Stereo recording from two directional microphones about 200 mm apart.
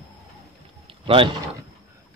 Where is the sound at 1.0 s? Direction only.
25° right (ahead or behind).